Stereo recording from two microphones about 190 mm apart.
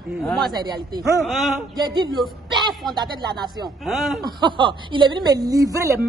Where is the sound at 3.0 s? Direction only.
20° right (ahead or behind).